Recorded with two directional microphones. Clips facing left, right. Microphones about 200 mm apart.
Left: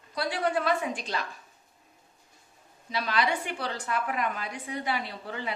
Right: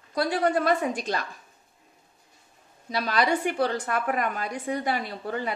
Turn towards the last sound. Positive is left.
turn(degrees=-45)  # may be behind; listen again after turning